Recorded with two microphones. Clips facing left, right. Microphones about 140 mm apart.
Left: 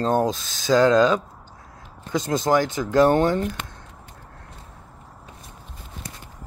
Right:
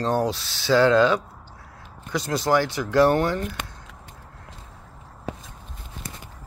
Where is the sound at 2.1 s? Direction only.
20° left (ahead or behind).